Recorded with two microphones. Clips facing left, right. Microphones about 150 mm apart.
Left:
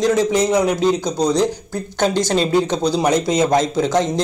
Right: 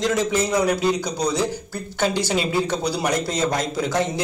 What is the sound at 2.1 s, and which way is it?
Speech, 10° right (ahead or behind).